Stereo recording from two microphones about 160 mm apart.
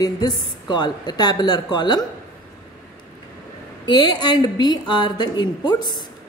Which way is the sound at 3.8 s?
30° left (ahead or behind).